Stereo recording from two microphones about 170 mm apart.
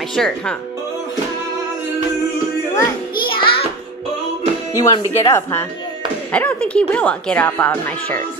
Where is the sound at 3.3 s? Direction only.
30° left (ahead or behind).